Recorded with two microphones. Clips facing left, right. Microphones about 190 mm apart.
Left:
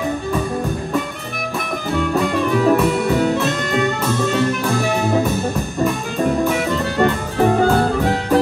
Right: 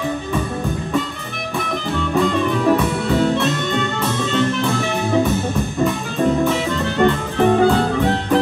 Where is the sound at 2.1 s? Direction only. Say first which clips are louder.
Right 2 dB; 5° left (ahead or behind).